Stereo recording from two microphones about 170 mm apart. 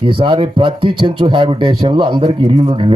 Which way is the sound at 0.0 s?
30° right (ahead or behind).